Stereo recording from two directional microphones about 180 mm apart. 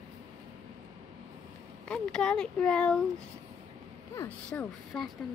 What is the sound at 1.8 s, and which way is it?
Speech, 5° left (ahead or behind).